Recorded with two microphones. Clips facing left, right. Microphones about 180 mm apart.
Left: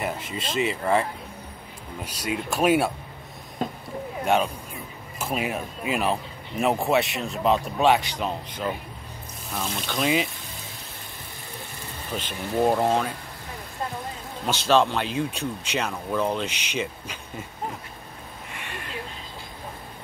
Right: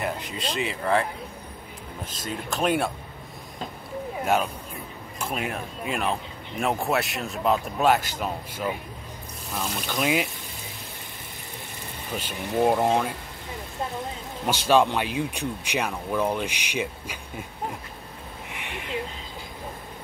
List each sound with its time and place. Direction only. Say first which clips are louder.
0.0 s a man's voice: even; centre (ahead or behind)
2.0 s speech: left 4 dB; 10° left (ahead or behind)
4.2 s a man's voice: left 2 dB; 5° right (ahead or behind)
12.1 s speech: even; 10° right (ahead or behind)
14.4 s speech: even; 10° right (ahead or behind)
18.6 s a sound: right 1 dB; 15° right (ahead or behind)